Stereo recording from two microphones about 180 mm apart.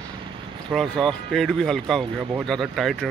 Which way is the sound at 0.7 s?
Centre (ahead or behind).